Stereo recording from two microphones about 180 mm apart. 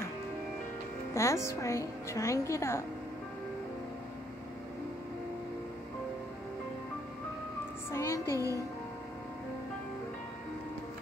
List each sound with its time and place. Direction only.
1.1 s a woman's voice: 15° left (ahead or behind)
7.9 s music: 15° left (ahead or behind)